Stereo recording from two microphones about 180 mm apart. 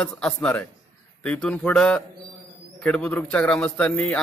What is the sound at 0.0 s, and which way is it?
A man's voice, 5° left (ahead or behind).